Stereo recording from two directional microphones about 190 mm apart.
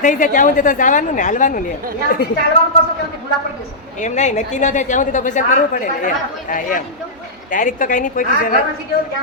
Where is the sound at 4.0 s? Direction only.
40° left (ahead or behind).